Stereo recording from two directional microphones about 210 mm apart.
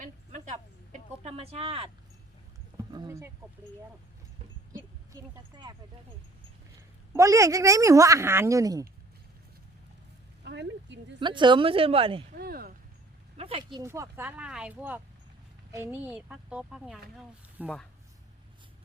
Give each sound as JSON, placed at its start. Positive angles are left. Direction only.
{"t": 0.0, "sound": "a sound", "side_deg": -35}
{"t": 2.9, "sound": "speech", "side_deg": -15}
{"t": 4.7, "sound": "a sound", "side_deg": -15}
{"t": 7.1, "sound": "a woman's voice", "side_deg": -15}
{"t": 10.4, "sound": "speech", "side_deg": -55}
{"t": 11.2, "sound": "a woman's voice", "side_deg": -20}
{"t": 12.4, "sound": "speech", "side_deg": -45}
{"t": 13.3, "sound": "a woman's voice", "side_deg": -30}